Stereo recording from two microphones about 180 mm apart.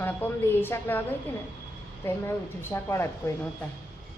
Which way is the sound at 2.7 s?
15° left (ahead or behind).